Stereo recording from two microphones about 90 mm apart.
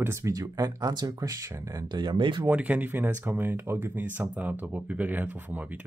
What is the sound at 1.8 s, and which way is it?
Speech, 55° right (ahead or behind).